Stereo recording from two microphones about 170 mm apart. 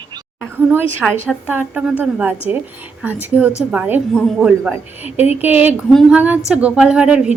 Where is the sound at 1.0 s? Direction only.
5° right (ahead or behind).